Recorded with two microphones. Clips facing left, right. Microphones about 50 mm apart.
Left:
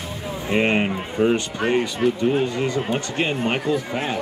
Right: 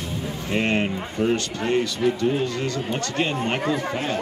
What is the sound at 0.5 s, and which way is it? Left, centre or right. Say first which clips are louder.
Speech: left 3 dB; centre.